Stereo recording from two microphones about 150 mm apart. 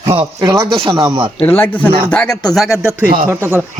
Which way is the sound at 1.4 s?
10° left (ahead or behind).